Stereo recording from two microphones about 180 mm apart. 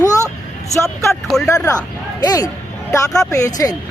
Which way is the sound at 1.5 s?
15° left (ahead or behind).